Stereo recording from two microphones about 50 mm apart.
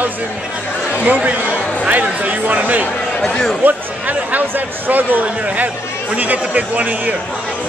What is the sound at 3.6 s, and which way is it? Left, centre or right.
Speech, right.